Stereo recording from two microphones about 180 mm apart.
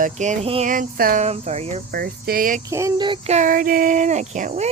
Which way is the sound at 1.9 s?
60° right (ahead or behind).